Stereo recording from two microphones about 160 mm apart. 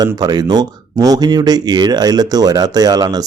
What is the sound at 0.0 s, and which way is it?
Speech, 25° right (ahead or behind).